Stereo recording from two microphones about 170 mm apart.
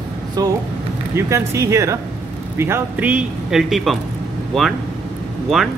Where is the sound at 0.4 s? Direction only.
20° right (ahead or behind); by 4.0 s centre (ahead or behind).